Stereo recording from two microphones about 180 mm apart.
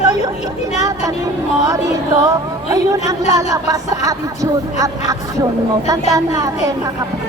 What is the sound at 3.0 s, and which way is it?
Speech, 20° right (ahead or behind).